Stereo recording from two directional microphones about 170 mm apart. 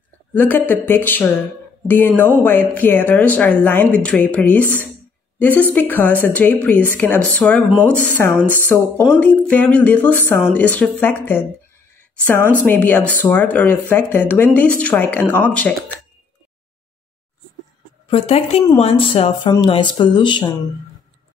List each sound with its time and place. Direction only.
0.3 s a woman's voice: 10° left (ahead or behind)
12.6 s speech: 10° left (ahead or behind)
18.1 s speech: 35° left (ahead or behind)